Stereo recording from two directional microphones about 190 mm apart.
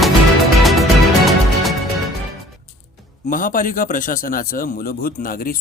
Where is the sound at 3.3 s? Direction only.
45° left (ahead or behind).